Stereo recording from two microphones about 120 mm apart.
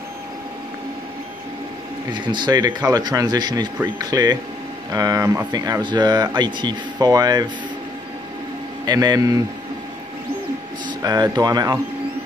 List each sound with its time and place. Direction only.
2.1 s speech: 40° right (ahead or behind)
5.5 s speech: 40° right (ahead or behind)
8.8 s speech: 35° right (ahead or behind)
10.9 s a sound: 35° right (ahead or behind)
11.3 s speech: 35° right (ahead or behind)